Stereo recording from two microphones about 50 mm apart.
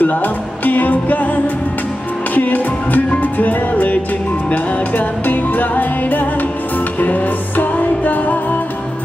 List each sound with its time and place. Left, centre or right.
0.0 s music: left